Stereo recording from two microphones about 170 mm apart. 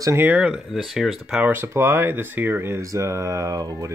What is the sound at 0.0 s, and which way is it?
Speech, 15° right (ahead or behind).